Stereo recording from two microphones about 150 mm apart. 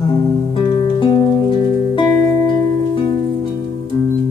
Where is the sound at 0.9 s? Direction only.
35° left (ahead or behind).